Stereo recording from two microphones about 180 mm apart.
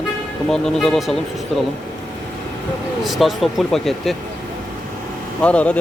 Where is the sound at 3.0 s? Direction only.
Centre (ahead or behind).